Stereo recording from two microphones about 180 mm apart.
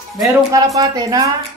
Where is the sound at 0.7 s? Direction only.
20° right (ahead or behind).